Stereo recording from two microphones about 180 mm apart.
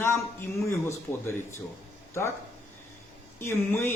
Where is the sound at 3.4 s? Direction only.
15° left (ahead or behind).